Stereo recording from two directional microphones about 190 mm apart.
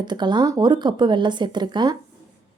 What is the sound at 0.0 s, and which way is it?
Speech, 25° right (ahead or behind).